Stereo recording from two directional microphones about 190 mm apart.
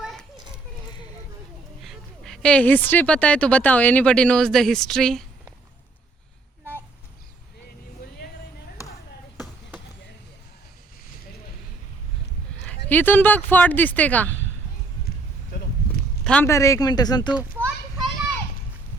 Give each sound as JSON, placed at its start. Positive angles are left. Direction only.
{"t": 0.0, "sound": "children playing", "side_deg": 0}
{"t": 1.8, "sound": "speech", "side_deg": 0}
{"t": 12.9, "sound": "speech", "side_deg": 10}
{"t": 16.2, "sound": "speech", "side_deg": 10}